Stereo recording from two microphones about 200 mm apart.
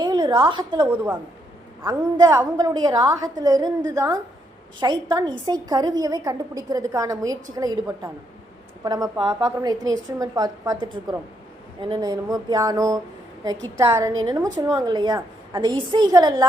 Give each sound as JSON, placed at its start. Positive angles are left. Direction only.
{"t": 0.0, "sound": "a woman's voice", "side_deg": -20}
{"t": 0.9, "sound": "a woman's voice", "side_deg": -10}
{"t": 1.8, "sound": "a woman's voice", "side_deg": -20}